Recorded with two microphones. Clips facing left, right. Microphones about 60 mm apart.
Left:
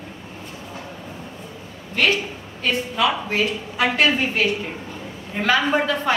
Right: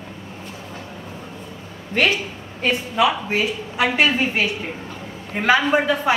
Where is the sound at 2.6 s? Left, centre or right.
Centre.